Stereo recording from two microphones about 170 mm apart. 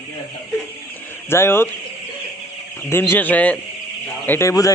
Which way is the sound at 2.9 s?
15° left (ahead or behind).